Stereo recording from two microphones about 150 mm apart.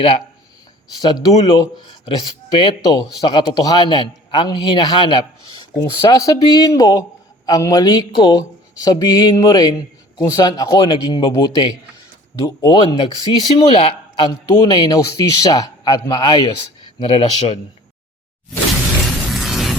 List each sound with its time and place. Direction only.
1.0 s speech: 25° left (ahead or behind)
19.3 s music: centre (ahead or behind)